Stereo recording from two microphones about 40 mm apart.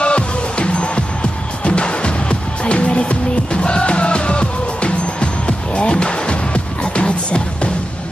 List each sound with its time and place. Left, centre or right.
0.0 s music: left